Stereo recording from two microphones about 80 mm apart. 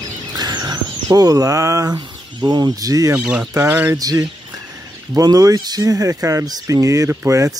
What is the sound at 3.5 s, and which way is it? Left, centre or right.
Speech, right.